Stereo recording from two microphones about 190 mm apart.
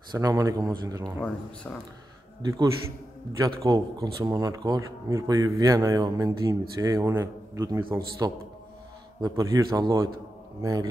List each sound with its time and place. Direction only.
0.1 s speech: 20° right (ahead or behind)
1.2 s speech: 5° left (ahead or behind)
2.4 s a man's voice: 20° right (ahead or behind)